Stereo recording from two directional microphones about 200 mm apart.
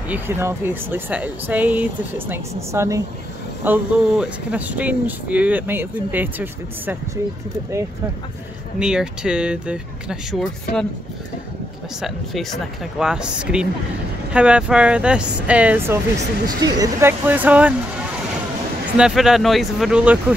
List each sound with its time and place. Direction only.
0.1 s speech: 10° right (ahead or behind)
8.7 s speech: 5° right (ahead or behind)
12.0 s speech: centre (ahead or behind)
16.4 s speech: 20° right (ahead or behind)
18.9 s speech: 5° right (ahead or behind)